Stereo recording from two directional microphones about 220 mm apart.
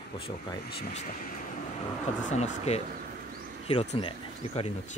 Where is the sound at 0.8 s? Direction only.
35° left (ahead or behind).